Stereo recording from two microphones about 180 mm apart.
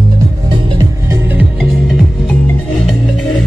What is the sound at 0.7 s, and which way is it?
Music, 20° right (ahead or behind).